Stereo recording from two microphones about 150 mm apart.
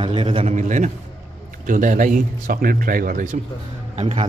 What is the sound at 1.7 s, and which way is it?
A man's voice, 60° right (ahead or behind).